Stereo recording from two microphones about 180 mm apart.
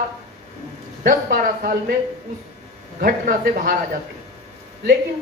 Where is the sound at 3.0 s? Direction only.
50° right (ahead or behind).